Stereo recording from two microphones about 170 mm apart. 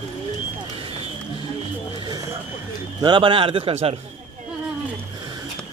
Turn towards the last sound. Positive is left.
turn(degrees=-35)  # may be behind; listen again after turning